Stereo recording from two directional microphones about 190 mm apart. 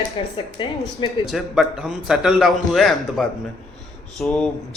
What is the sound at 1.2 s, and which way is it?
Speech, centre (ahead or behind).